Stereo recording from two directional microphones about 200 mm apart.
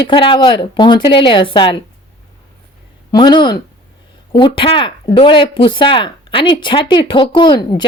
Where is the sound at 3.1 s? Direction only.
20° left (ahead or behind).